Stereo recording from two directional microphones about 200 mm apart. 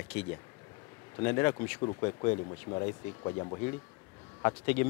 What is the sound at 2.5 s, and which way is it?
Speech, 25° left (ahead or behind).